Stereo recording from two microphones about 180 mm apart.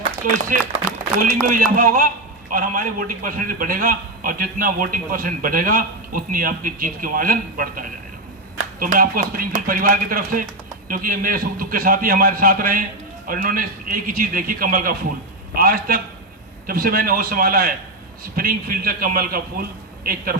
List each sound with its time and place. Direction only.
0.2 s a man's voice: 50° right (ahead or behind)